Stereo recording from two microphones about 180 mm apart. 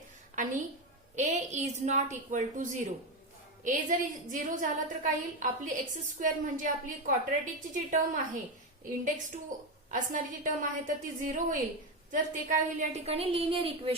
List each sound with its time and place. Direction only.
1.1 s a woman's voice: 40° right (ahead or behind)
9.9 s a woman's voice: 45° right (ahead or behind); by 13.9 s 30° right (ahead or behind)